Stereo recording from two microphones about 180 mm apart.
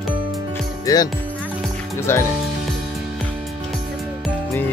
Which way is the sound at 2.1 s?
15° left (ahead or behind).